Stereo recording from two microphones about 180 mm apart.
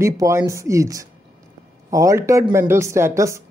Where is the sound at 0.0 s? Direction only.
15° right (ahead or behind).